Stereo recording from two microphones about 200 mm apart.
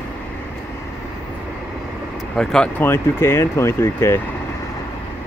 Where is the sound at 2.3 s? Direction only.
5° left (ahead or behind).